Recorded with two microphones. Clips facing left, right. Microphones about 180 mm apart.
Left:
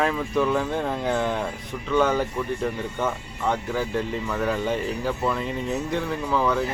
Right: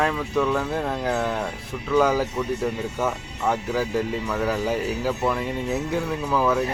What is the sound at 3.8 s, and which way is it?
Speech, 5° right (ahead or behind).